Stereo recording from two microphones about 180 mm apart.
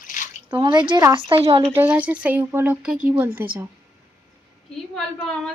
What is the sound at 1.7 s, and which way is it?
Speech, 10° right (ahead or behind).